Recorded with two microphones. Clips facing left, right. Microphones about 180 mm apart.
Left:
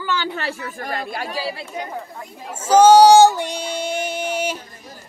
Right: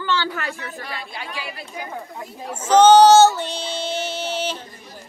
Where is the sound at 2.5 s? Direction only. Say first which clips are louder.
Left 1 dB; 10° left (ahead or behind).